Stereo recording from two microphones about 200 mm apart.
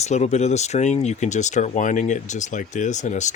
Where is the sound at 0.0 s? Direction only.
35° left (ahead or behind).